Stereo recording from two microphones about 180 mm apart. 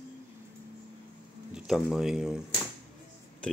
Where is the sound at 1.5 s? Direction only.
Centre (ahead or behind).